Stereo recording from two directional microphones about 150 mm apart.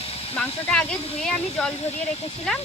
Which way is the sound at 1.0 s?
40° left (ahead or behind).